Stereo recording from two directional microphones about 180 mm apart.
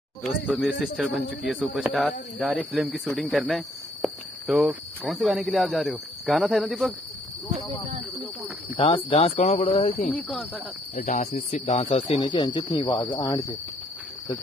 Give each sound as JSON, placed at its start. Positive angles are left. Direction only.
{"t": 0.2, "sound": "speech", "side_deg": 0}
{"t": 8.7, "sound": "speech", "side_deg": 30}
{"t": 10.1, "sound": "speech", "side_deg": 5}
{"t": 11.0, "sound": "speech", "side_deg": 45}